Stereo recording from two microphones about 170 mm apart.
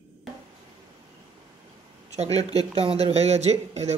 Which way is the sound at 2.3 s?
35° right (ahead or behind).